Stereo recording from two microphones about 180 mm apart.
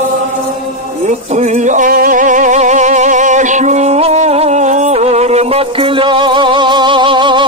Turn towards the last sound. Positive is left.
turn(degrees=-25)  # may be behind; listen again after turning